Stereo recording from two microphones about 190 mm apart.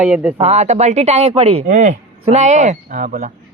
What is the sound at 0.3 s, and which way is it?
Speech, 35° right (ahead or behind).